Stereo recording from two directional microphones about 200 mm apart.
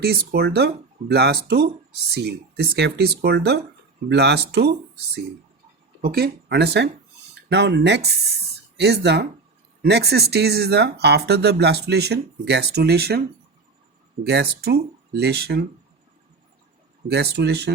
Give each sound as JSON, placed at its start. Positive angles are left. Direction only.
{"t": 0.0, "sound": "speech", "side_deg": -50}
{"t": 6.0, "sound": "speech", "side_deg": -50}
{"t": 14.3, "sound": "speech", "side_deg": -55}
{"t": 17.1, "sound": "speech", "side_deg": -55}